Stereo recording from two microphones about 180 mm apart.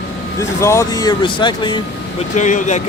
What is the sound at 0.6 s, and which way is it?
Speech, 15° left (ahead or behind).